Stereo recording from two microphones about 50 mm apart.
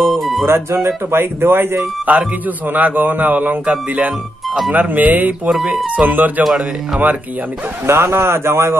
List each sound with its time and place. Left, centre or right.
0.0 s music: centre
1.1 s speech: right
2.0 s speech: right
4.7 s speech: right
6.4 s a man's voice: centre
7.8 s speech: right